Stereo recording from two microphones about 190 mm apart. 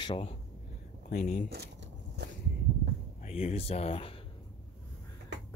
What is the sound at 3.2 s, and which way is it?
Speech, 35° left (ahead or behind).